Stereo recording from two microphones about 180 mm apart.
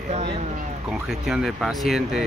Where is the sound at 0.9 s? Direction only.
5° right (ahead or behind).